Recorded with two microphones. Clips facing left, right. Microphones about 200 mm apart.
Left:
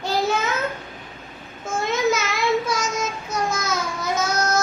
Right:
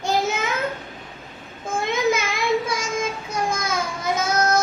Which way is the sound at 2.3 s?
55° right (ahead or behind).